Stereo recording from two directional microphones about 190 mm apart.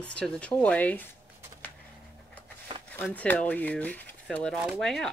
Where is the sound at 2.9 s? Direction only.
10° left (ahead or behind).